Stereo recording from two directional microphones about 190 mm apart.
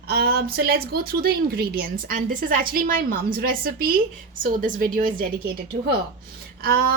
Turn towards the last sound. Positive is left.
turn(degrees=-55)  # may be behind; listen again after turning